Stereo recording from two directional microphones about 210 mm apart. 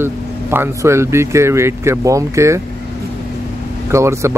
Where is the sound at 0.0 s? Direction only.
10° right (ahead or behind).